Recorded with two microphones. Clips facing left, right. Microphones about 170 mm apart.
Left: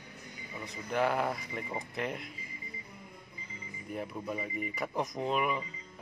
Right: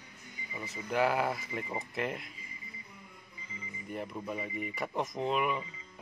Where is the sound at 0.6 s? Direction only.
5° right (ahead or behind).